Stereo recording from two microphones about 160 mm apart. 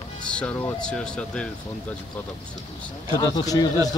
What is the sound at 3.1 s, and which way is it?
Speech, 25° left (ahead or behind).